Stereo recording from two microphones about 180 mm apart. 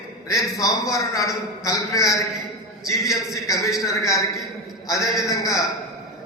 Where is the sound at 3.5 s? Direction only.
20° left (ahead or behind).